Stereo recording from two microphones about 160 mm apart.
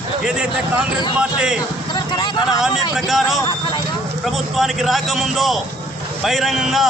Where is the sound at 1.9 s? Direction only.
25° left (ahead or behind).